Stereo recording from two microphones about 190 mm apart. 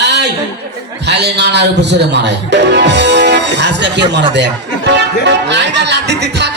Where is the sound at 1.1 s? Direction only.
60° right (ahead or behind).